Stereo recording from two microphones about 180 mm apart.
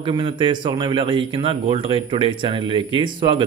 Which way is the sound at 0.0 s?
30° right (ahead or behind).